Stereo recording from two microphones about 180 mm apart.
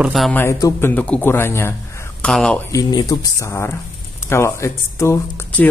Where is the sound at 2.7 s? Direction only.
20° left (ahead or behind).